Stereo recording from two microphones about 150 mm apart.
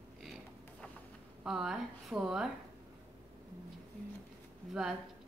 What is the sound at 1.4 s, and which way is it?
Speech, 5° right (ahead or behind).